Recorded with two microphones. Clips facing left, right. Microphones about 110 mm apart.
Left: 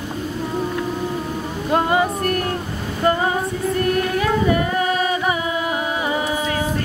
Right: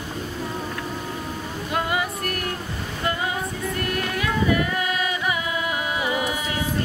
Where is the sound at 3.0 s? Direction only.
35° left (ahead or behind).